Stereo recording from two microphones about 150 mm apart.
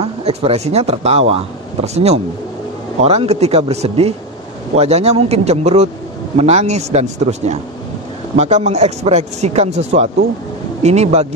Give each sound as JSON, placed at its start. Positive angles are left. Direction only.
{"t": 0.0, "sound": "speech", "side_deg": -45}